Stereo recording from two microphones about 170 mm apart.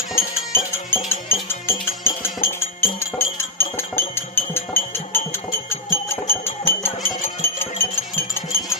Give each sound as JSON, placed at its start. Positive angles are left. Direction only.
{"t": 0.2, "sound": "music", "side_deg": 15}